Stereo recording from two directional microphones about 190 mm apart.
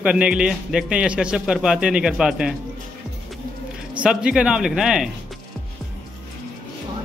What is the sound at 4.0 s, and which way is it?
Speech, 5° right (ahead or behind).